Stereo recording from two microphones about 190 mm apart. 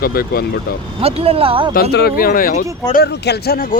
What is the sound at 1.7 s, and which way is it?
Speech, 55° left (ahead or behind).